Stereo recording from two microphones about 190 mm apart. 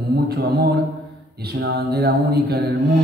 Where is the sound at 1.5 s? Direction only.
55° right (ahead or behind).